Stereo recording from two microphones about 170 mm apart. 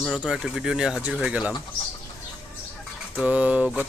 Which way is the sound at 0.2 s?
5° right (ahead or behind).